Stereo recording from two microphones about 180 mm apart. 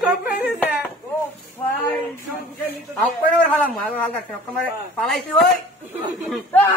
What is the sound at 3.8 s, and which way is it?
A man's voice, 5° left (ahead or behind).